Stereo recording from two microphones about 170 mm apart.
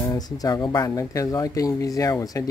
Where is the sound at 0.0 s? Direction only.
20° left (ahead or behind).